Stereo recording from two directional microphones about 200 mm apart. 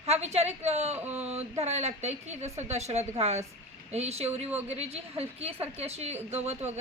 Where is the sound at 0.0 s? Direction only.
30° right (ahead or behind).